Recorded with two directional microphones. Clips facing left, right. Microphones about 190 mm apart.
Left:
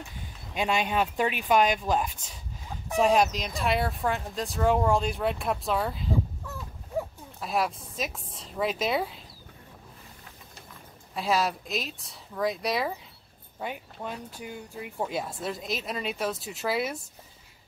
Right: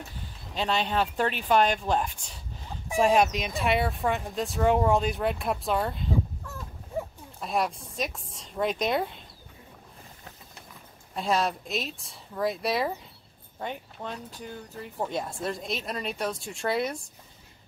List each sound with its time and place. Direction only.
0.6 s speech: 10° left (ahead or behind)
11.1 s speech: centre (ahead or behind)